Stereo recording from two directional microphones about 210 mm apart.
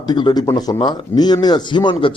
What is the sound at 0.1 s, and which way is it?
Speech, 20° left (ahead or behind).